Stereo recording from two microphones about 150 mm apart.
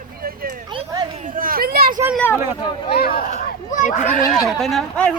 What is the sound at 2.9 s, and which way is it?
Speech, 90° left.